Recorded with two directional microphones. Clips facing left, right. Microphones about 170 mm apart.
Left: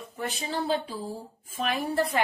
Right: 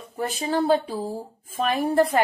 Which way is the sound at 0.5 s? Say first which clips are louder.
Right 8 dB; 50° right (ahead or behind).